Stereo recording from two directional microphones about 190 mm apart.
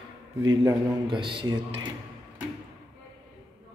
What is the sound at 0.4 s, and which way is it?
Speech, 25° right (ahead or behind).